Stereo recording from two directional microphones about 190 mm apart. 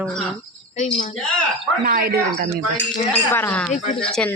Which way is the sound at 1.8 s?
50° right (ahead or behind).